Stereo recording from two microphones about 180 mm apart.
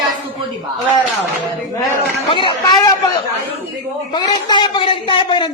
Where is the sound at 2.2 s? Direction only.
25° left (ahead or behind).